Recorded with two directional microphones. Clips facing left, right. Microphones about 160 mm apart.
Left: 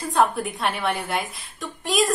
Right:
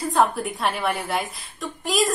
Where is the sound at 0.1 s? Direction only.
Centre (ahead or behind).